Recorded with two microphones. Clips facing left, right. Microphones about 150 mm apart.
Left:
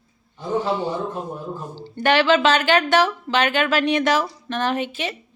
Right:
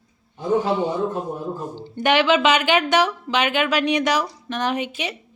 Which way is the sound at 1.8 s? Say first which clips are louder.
Left 1 dB; 15° right (ahead or behind).